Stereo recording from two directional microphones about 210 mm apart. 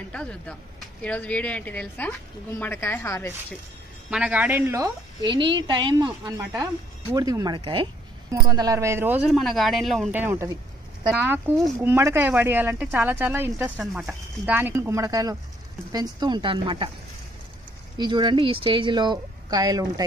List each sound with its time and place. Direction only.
0.1 s speech: 5° left (ahead or behind)
4.1 s a woman's voice: 5° right (ahead or behind)
10.2 s a woman's voice: 10° right (ahead or behind)
11.6 s a woman's voice: 15° right (ahead or behind)
17.9 s speech: 20° right (ahead or behind)